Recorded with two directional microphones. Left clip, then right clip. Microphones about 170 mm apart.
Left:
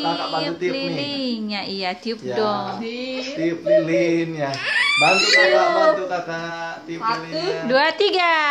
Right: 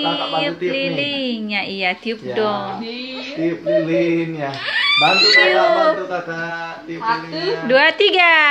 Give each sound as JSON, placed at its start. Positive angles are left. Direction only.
{"t": 0.0, "sound": "speech", "side_deg": 5}
{"t": 3.8, "sound": "a sound", "side_deg": 5}
{"t": 4.6, "sound": "speech", "side_deg": 20}
{"t": 5.4, "sound": "speech", "side_deg": 0}
{"t": 7.6, "sound": "speech", "side_deg": 0}